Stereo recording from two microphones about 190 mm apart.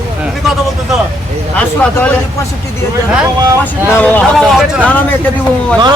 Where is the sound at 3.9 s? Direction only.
10° left (ahead or behind).